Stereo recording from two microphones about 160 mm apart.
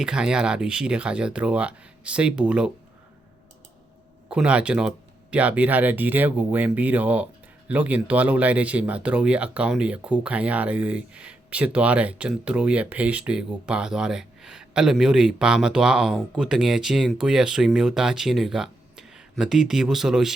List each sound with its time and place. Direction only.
0.0 s speech: 5° right (ahead or behind)
4.3 s speech: 5° right (ahead or behind)